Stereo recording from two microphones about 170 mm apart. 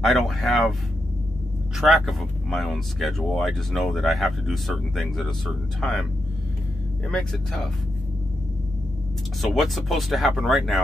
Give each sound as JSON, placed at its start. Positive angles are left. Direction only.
{"t": 0.0, "sound": "speech", "side_deg": 0}
{"t": 1.8, "sound": "speech", "side_deg": 0}
{"t": 7.1, "sound": "speech", "side_deg": 5}
{"t": 9.4, "sound": "speech", "side_deg": 0}